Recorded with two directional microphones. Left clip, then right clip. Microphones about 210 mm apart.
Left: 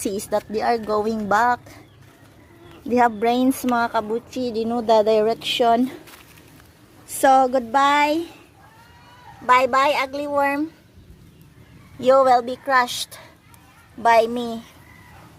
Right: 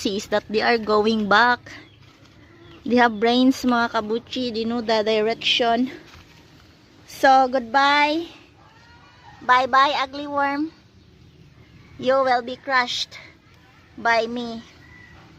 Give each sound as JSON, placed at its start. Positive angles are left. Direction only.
{"t": 0.0, "sound": "speech", "side_deg": -10}
{"t": 2.9, "sound": "speech", "side_deg": -15}
{"t": 7.1, "sound": "speech", "side_deg": 0}
{"t": 9.5, "sound": "speech", "side_deg": 5}
{"t": 11.9, "sound": "speech", "side_deg": 5}